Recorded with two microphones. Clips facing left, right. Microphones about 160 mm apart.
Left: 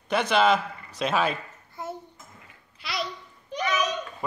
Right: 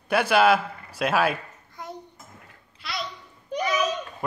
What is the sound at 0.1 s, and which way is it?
A man's voice, 5° right (ahead or behind).